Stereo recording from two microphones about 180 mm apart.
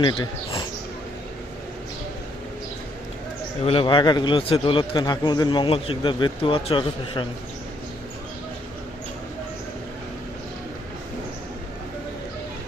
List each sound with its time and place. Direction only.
0.0 s a man's voice: 25° left (ahead or behind)
3.6 s a man's voice: 30° left (ahead or behind)